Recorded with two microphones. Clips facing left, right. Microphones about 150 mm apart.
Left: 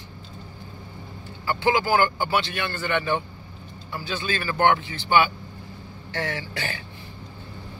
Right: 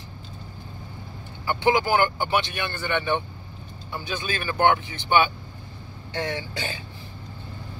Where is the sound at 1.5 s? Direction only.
20° right (ahead or behind).